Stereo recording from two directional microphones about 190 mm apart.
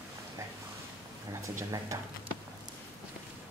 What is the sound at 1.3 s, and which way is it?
Speech, 15° right (ahead or behind).